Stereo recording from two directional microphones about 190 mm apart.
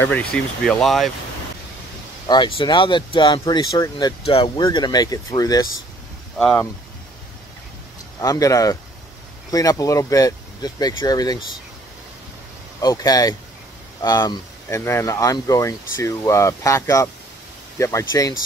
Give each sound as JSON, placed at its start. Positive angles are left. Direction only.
{"t": 0.0, "sound": "speech", "side_deg": 5}
{"t": 2.2, "sound": "speech", "side_deg": 25}
{"t": 6.3, "sound": "speech", "side_deg": 5}
{"t": 8.2, "sound": "speech", "side_deg": 20}
{"t": 12.8, "sound": "speech", "side_deg": 20}